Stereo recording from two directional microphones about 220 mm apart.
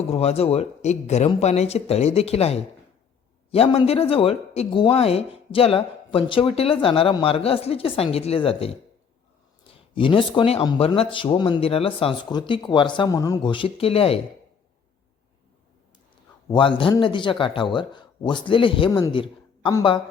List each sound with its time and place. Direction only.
0.1 s speech: 30° left (ahead or behind)
9.9 s speech: 25° left (ahead or behind)
16.5 s speech: 20° left (ahead or behind)